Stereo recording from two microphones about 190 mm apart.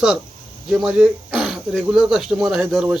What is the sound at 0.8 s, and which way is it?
Speech, 5° right (ahead or behind).